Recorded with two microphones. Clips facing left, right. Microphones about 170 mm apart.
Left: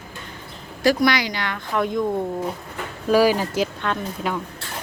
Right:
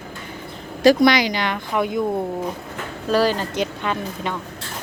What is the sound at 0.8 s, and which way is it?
Speech, 20° right (ahead or behind).